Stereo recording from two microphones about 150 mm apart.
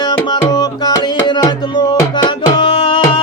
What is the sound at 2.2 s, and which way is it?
Tabla, 35° left (ahead or behind).